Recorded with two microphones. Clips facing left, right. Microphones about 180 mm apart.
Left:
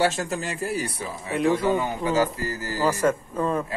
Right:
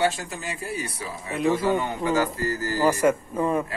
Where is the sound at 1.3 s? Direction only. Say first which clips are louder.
Left 1 dB; centre (ahead or behind).